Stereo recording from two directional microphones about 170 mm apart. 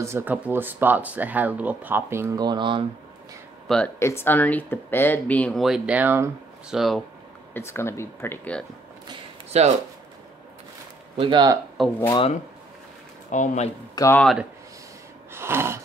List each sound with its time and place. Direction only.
0.0 s speech: 15° right (ahead or behind)
3.6 s speech: 5° left (ahead or behind)
4.0 s speech: 15° left (ahead or behind); by 6.3 s 15° right (ahead or behind)
6.7 s speech: centre (ahead or behind)
7.5 s speech: 15° left (ahead or behind)
9.5 s speech: 40° right (ahead or behind)
11.1 s speech: 30° right (ahead or behind)
13.3 s speech: 45° left (ahead or behind)
13.9 s speech: 15° left (ahead or behind)
14.2 s speech: centre (ahead or behind)
15.3 s a sound: 15° right (ahead or behind)